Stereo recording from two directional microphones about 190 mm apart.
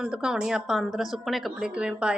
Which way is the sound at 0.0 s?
5° right (ahead or behind).